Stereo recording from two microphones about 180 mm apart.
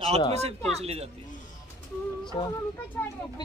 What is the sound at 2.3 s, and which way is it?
Speech, 25° left (ahead or behind).